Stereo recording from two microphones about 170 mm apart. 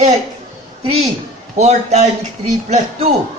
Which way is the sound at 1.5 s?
40° right (ahead or behind).